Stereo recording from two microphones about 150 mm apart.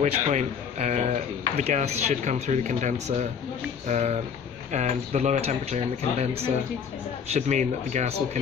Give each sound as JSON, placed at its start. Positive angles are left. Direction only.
{"t": 0.0, "sound": "speech", "side_deg": -50}